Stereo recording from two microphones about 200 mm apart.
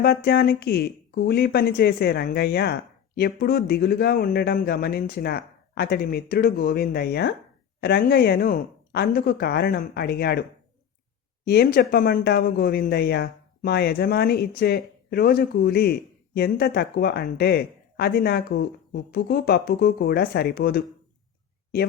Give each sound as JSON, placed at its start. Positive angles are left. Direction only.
{"t": 0.0, "sound": "speech", "side_deg": 50}
{"t": 11.4, "sound": "speech", "side_deg": 50}